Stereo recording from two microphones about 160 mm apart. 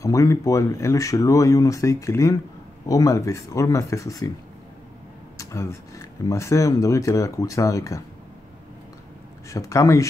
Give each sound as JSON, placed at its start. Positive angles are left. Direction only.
{"t": 0.0, "sound": "speech", "side_deg": 20}
{"t": 5.4, "sound": "speech", "side_deg": 20}
{"t": 9.5, "sound": "speech", "side_deg": 20}